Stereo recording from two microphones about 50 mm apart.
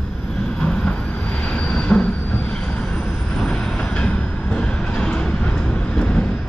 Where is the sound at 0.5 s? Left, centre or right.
Centre.